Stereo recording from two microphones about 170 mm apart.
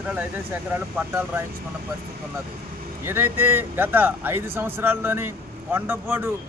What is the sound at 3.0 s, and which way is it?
Speech, 15° right (ahead or behind).